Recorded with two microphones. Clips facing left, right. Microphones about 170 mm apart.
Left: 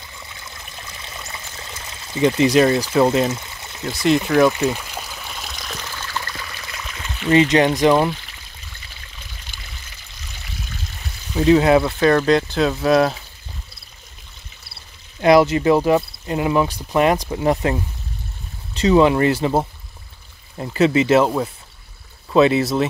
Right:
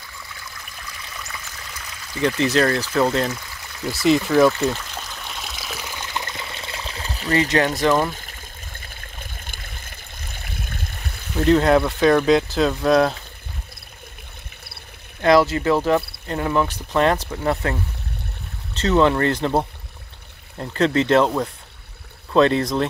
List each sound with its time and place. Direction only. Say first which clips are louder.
0.0 s stream: left 1 dB; 20° left (ahead or behind)
3.9 s speech: even; centre (ahead or behind)
4.5 s trickle: left 1 dB; 10° left (ahead or behind); by 7.3 s 35° right (ahead or behind)
7.3 s speech: left 5 dB; 20° left (ahead or behind)
8.1 s stream: left 5 dB; 45° right (ahead or behind)
11.3 s speech: left 2 dB; 5° left (ahead or behind)
15.2 s speech: left 3 dB; 15° left (ahead or behind)
18.8 s speech: left 3 dB; 10° left (ahead or behind)